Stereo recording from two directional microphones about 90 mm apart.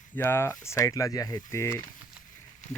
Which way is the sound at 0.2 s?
25° left (ahead or behind).